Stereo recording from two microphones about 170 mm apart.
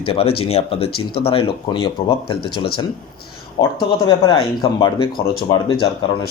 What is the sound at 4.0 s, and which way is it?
Speech, 25° left (ahead or behind).